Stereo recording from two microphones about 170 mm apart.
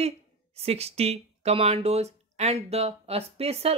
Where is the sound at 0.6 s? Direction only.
35° right (ahead or behind).